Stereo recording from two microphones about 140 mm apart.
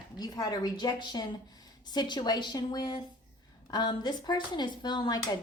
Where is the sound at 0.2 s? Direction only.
25° left (ahead or behind).